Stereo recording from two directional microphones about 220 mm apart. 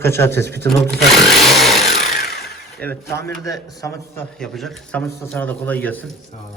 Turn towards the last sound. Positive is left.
turn(degrees=5)  # may be behind; listen again after turning